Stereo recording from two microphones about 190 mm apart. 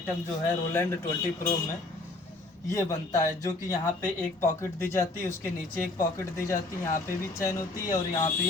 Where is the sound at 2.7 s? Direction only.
15° left (ahead or behind).